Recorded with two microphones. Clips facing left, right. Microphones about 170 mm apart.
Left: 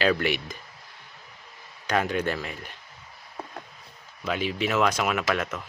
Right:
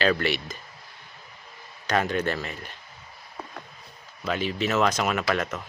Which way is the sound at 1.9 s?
10° left (ahead or behind).